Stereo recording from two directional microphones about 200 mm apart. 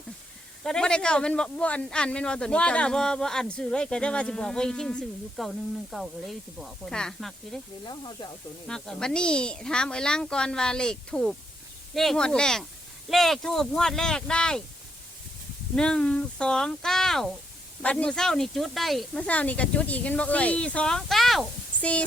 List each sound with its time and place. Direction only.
0.6 s a man's voice: 5° left (ahead or behind)
7.9 s stir: 20° left (ahead or behind)
8.6 s a man's voice: 5° left (ahead or behind)
15.7 s a man's voice: 5° left (ahead or behind)